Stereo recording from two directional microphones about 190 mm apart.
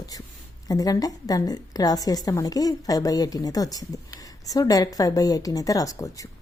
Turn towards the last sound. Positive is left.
turn(degrees=20)  # may be behind; listen again after turning